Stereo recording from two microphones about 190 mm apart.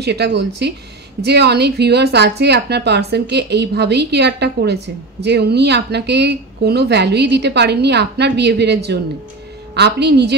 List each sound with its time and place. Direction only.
0.0 s speech: 60° right (ahead or behind)